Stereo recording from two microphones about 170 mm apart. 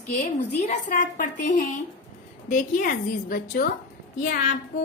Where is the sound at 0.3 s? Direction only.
45° left (ahead or behind).